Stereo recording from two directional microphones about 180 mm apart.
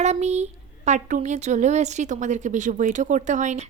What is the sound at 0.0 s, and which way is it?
Speech, 40° right (ahead or behind).